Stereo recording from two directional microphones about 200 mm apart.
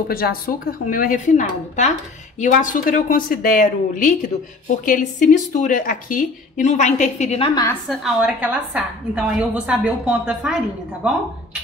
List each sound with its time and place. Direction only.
0.1 s a woman's voice: 50° left (ahead or behind); by 7.6 s 25° left (ahead or behind)
7.9 s a woman's voice: 5° right (ahead or behind)